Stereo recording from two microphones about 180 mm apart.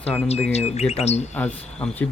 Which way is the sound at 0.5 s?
35° left (ahead or behind).